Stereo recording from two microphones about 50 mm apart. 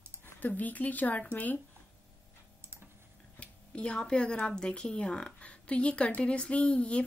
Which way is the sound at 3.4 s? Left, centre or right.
Left.